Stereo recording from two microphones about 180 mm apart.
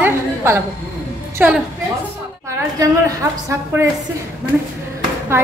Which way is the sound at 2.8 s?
20° right (ahead or behind).